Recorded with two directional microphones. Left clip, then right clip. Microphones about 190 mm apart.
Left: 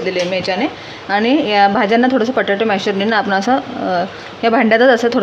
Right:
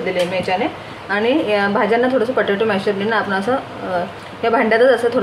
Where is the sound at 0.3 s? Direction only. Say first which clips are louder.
Left 1 dB; 55° left (ahead or behind).